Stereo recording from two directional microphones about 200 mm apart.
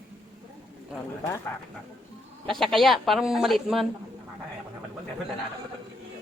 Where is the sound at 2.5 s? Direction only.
Centre (ahead or behind).